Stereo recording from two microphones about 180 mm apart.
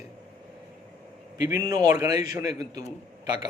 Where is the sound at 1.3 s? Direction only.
20° right (ahead or behind).